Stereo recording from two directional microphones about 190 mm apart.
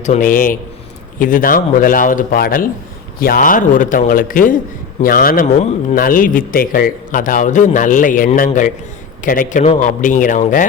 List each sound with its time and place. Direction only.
0.0 s a man's voice: 40° left (ahead or behind)